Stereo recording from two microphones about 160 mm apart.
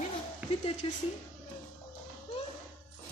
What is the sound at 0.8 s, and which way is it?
Speech, 30° left (ahead or behind).